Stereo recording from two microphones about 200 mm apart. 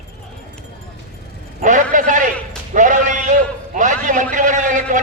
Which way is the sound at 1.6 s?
40° right (ahead or behind).